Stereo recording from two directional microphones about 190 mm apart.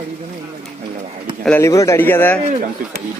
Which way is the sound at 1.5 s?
15° left (ahead or behind).